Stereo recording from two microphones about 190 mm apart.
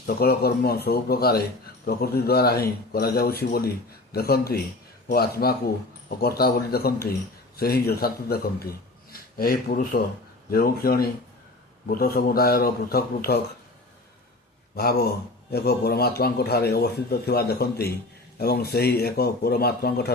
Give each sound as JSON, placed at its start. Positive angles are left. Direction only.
{"t": 0.0, "sound": "a man's voice", "side_deg": 55}
{"t": 14.8, "sound": "speech", "side_deg": 55}